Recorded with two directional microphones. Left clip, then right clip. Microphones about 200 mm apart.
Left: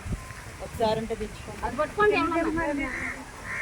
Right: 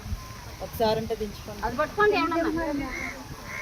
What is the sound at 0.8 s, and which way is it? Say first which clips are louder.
Speech: right 1 dB; 40° right (ahead or behind).